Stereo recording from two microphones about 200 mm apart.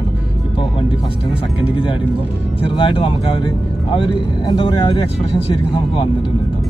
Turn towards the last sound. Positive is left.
turn(degrees=25)  # may be behind; listen again after turning